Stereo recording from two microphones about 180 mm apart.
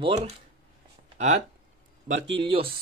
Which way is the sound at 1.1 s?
40° right (ahead or behind).